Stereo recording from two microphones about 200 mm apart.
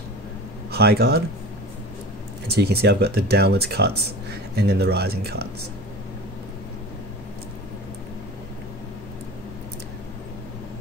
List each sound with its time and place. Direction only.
0.7 s speech: 55° right (ahead or behind)
2.6 s speech: 55° right (ahead or behind)